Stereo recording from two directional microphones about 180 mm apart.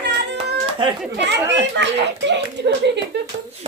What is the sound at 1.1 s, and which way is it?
A child's voice, 75° right (ahead or behind).